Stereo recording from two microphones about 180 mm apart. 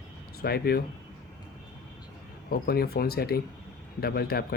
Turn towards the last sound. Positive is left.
turn(degrees=60)  # may be behind; listen again after turning